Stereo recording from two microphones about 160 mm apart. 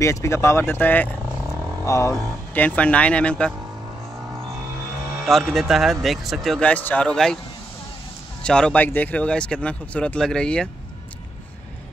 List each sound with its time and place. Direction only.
0.0 s speech: 20° left (ahead or behind)
2.1 s speech: 5° left (ahead or behind)
5.2 s speech: centre (ahead or behind)
8.4 s speech: 5° left (ahead or behind)